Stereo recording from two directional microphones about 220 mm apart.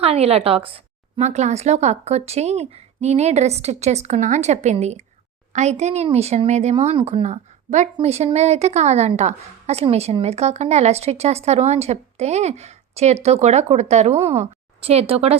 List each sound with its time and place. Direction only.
0.0 s a woman's voice: 25° right (ahead or behind)